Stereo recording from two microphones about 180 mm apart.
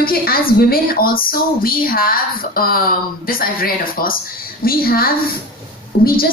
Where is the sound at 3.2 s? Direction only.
55° left (ahead or behind).